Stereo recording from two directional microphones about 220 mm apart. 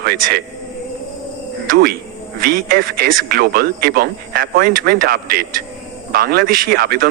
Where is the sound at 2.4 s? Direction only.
40° right (ahead or behind).